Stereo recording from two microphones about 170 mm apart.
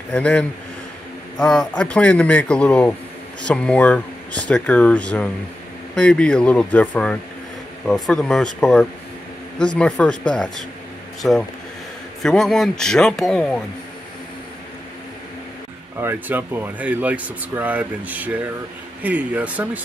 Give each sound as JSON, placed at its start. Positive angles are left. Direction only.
{"t": 0.1, "sound": "speech", "side_deg": 5}
{"t": 16.0, "sound": "speech", "side_deg": -10}